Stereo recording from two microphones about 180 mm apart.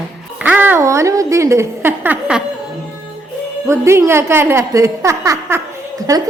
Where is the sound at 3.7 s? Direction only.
15° right (ahead or behind).